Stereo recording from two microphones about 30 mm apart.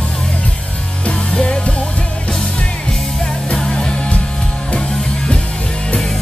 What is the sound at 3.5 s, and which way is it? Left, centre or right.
Music, left.